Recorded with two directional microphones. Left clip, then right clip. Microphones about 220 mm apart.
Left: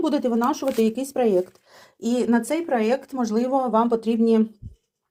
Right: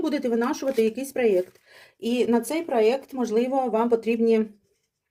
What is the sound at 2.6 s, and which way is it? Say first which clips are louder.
Speech: right 1 dB; 25° left (ahead or behind).